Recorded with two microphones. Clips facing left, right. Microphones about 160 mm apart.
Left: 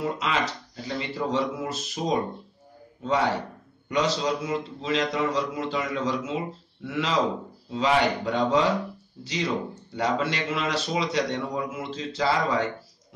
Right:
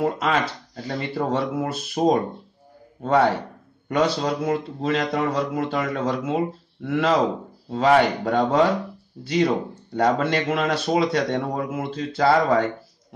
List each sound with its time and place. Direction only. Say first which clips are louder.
0.0 s a man's voice: right 5 dB; 50° right (ahead or behind)